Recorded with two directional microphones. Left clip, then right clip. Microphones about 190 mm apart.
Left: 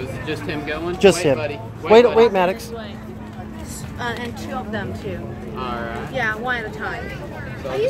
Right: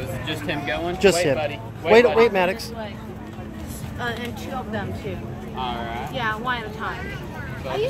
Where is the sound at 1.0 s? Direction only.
30° left (ahead or behind).